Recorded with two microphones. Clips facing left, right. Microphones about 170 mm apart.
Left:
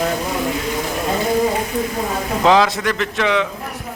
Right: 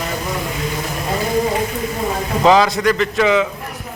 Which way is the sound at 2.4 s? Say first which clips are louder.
Right 2 dB; centre (ahead or behind).